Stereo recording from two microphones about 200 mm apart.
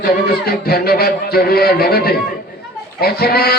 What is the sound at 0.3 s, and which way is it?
A man's voice, 50° left (ahead or behind).